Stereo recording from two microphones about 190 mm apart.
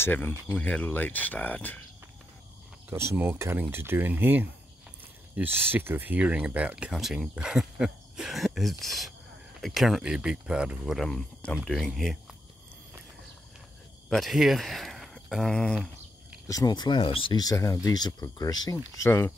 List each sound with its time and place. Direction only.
0.0 s speech: 10° left (ahead or behind)
2.9 s speech: 10° right (ahead or behind)
14.1 s speech: centre (ahead or behind)
15.7 s a sound: 5° right (ahead or behind)
16.4 s speech: 20° left (ahead or behind)